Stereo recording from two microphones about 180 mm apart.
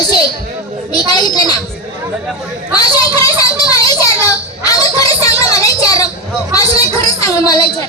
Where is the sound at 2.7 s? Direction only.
20° left (ahead or behind).